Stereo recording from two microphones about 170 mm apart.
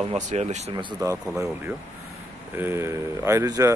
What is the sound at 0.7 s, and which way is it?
Speech, 30° right (ahead or behind).